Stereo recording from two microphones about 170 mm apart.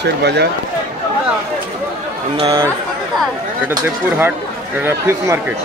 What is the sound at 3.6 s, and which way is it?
Speech, 10° right (ahead or behind).